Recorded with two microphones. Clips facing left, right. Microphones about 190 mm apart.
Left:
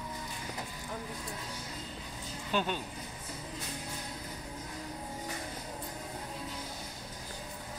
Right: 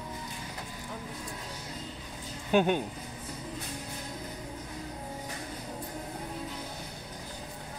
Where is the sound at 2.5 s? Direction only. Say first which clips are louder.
Right 8 dB; 55° right (ahead or behind).